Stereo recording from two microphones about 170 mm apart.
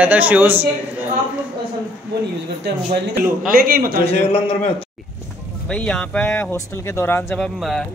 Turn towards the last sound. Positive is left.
turn(degrees=5)  # may be behind; listen again after turning